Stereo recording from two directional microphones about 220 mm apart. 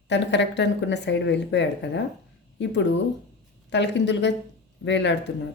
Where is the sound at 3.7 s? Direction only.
55° left (ahead or behind).